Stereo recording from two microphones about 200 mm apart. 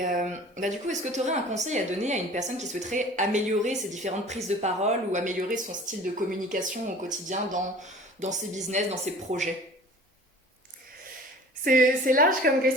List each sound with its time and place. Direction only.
0.0 s speech: 40° right (ahead or behind)
11.6 s a woman's voice: 45° right (ahead or behind)